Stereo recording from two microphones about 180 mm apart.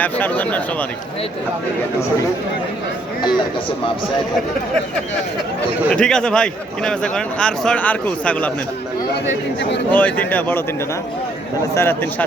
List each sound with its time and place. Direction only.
0.0 s speech: 10° left (ahead or behind)
5.9 s speech: 5° left (ahead or behind)
9.2 s speech: 75° left (ahead or behind)
9.9 s speech: 10° left (ahead or behind)
11.7 s speech: 15° left (ahead or behind)